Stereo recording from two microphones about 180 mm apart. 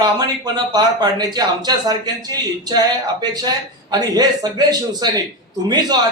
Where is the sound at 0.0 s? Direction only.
25° right (ahead or behind).